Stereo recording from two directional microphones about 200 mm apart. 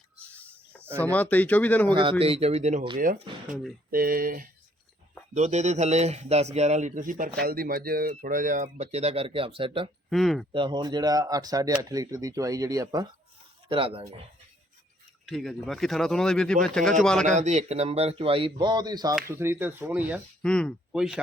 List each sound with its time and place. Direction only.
0.2 s a sound: 5° left (ahead or behind)
0.9 s speech: 10° left (ahead or behind)
2.0 s speech: 25° right (ahead or behind)
3.9 s speech: 45° right (ahead or behind)
5.3 s speech: 35° right (ahead or behind)
10.1 s speech: centre (ahead or behind)
10.5 s speech: 25° right (ahead or behind)
15.3 s speech: centre (ahead or behind)
17.3 s speech: 35° right (ahead or behind); by 20.2 s 5° right (ahead or behind)
20.4 s speech: 5° left (ahead or behind)